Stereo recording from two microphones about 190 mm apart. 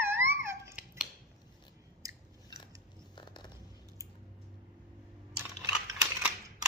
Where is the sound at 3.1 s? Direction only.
25° left (ahead or behind).